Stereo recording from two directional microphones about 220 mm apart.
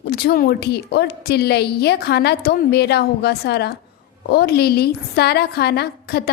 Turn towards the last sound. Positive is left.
turn(degrees=45)  # may be behind; listen again after turning